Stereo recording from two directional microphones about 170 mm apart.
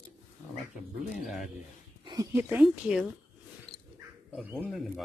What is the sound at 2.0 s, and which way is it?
Speech, 20° right (ahead or behind).